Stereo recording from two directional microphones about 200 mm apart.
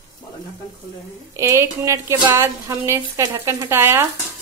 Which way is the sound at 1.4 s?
15° right (ahead or behind).